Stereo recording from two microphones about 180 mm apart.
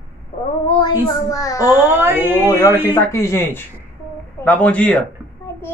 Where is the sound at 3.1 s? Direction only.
15° left (ahead or behind).